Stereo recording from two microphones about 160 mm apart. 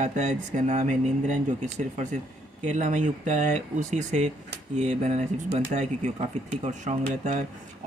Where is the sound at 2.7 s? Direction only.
45° right (ahead or behind).